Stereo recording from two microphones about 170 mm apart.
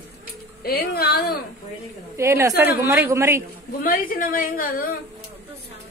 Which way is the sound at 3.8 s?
60° left (ahead or behind).